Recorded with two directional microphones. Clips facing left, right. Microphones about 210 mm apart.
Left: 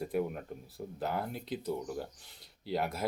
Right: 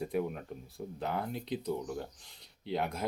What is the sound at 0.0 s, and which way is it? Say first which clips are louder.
Speech: even; 5° left (ahead or behind).